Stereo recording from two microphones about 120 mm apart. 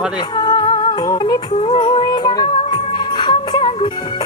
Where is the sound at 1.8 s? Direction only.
40° left (ahead or behind).